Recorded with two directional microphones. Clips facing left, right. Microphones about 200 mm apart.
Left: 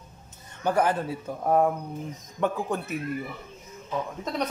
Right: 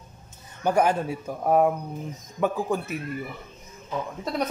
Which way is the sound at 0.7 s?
15° right (ahead or behind).